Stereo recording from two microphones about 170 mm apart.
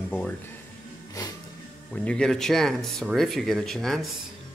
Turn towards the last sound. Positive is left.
turn(degrees=0)  # may be behind; listen again after turning